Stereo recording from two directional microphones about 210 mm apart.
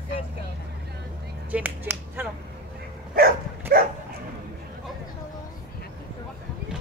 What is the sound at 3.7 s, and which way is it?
Dog, 45° right (ahead or behind).